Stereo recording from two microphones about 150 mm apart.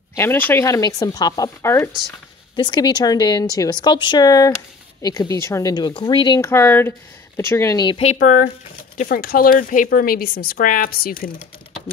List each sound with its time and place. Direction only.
0.1 s speech: 15° left (ahead or behind)
1.9 s speech: centre (ahead or behind)
2.5 s speech: 30° left (ahead or behind)
6.4 s speech: 15° left (ahead or behind)
8.0 s speech: 50° left (ahead or behind); by 11.3 s 80° left